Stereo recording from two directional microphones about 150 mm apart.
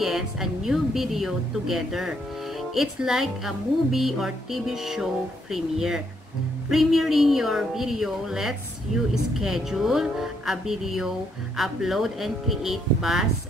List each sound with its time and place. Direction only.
0.0 s a woman's voice: centre (ahead or behind)